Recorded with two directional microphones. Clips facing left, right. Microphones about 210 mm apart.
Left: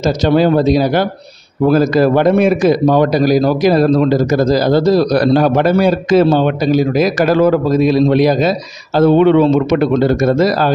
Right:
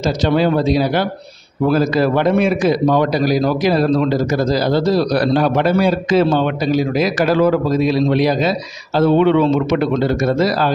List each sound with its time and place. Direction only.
0.0 s a man's voice: 40° left (ahead or behind)